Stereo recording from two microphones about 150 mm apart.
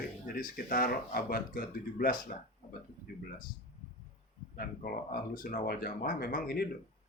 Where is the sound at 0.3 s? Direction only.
70° left (ahead or behind).